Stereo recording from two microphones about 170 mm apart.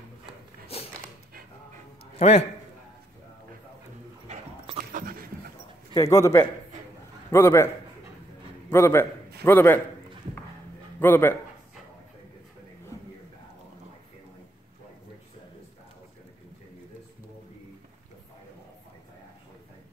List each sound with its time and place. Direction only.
2.1 s a man's voice: 35° left (ahead or behind)
4.7 s a sound: 55° right (ahead or behind)
5.9 s a man's voice: 20° left (ahead or behind)
11.0 s a man's voice: 10° left (ahead or behind)